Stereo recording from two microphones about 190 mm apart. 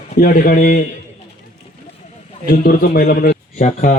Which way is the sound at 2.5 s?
50° left (ahead or behind).